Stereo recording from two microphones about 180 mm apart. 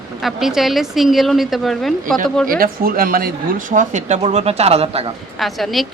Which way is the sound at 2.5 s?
55° right (ahead or behind).